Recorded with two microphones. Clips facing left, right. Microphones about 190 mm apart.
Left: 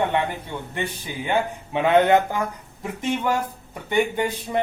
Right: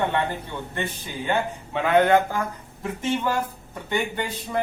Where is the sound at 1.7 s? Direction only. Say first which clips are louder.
Left 1 dB; 20° left (ahead or behind).